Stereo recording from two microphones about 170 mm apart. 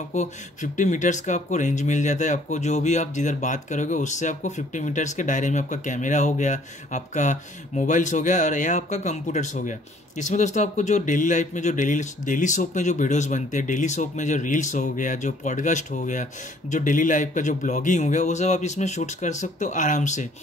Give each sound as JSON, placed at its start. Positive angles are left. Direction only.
{"t": 0.1, "sound": "speech", "side_deg": 45}